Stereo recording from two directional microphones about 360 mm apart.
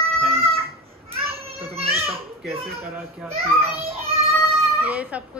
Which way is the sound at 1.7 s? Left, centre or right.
Centre.